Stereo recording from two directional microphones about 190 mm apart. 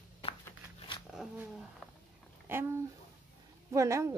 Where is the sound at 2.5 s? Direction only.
10° right (ahead or behind).